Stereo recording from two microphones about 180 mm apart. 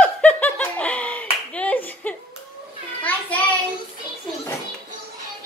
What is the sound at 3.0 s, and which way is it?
Child singing, 10° left (ahead or behind).